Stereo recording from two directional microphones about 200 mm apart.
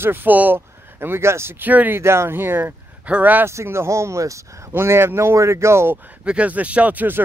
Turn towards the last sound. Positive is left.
turn(degrees=-10)  # may be behind; listen again after turning